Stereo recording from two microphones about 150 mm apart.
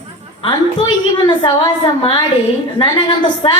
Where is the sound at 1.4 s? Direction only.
30° left (ahead or behind).